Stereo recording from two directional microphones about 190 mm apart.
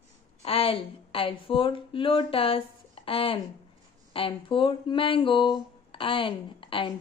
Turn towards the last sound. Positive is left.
turn(degrees=25)  # may be behind; listen again after turning